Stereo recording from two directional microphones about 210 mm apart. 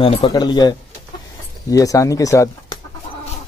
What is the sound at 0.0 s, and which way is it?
Speech, 25° left (ahead or behind).